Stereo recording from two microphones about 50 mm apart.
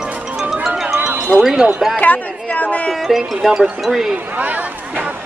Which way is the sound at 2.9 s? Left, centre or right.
Centre.